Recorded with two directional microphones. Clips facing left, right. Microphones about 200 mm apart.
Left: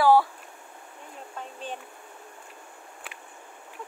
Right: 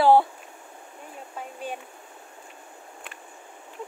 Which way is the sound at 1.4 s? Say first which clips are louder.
Right 3 dB; 10° right (ahead or behind).